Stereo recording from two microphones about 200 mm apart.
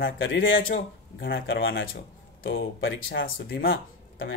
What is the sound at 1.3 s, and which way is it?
Speech, 75° left (ahead or behind).